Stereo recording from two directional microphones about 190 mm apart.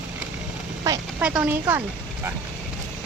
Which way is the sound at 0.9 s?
15° right (ahead or behind).